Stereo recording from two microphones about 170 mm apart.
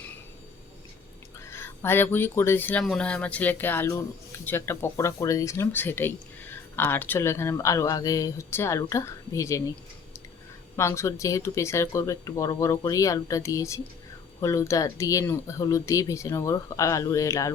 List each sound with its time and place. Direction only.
1.5 s speech: 15° left (ahead or behind)
10.8 s speech: 15° left (ahead or behind)